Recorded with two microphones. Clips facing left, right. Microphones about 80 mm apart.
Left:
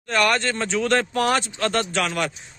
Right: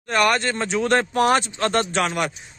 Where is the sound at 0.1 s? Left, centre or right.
Centre.